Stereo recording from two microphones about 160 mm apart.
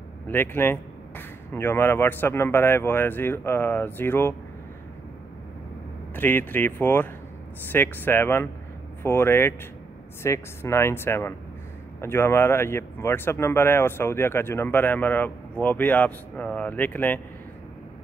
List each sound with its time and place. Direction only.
0.3 s speech: 15° left (ahead or behind)
6.1 s speech: 10° left (ahead or behind)